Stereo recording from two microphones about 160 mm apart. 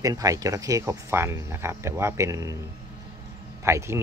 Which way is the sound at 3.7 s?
15° right (ahead or behind).